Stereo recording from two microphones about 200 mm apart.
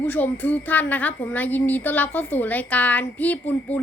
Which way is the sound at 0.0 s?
10° left (ahead or behind).